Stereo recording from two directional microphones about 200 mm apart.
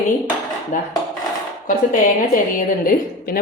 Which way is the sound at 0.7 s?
40° left (ahead or behind).